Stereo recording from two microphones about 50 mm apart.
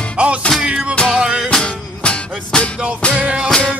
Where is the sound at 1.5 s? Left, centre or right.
Centre.